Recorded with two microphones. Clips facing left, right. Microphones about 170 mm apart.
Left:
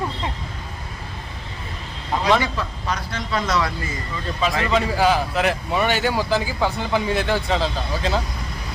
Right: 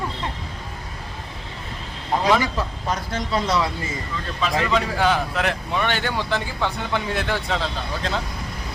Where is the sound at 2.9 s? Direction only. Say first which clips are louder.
Right 2 dB; 45° right (ahead or behind).